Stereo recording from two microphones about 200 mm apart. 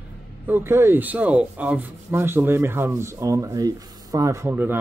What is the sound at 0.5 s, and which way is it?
Rub, 10° right (ahead or behind).